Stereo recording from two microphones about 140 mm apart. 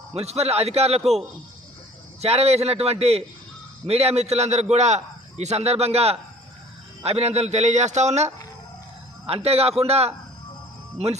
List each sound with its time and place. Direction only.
0.1 s a man's voice: 50° right (ahead or behind)
2.2 s a man's voice: 50° right (ahead or behind)